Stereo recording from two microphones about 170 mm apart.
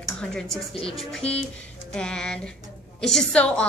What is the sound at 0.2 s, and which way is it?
A woman's voice, 5° left (ahead or behind).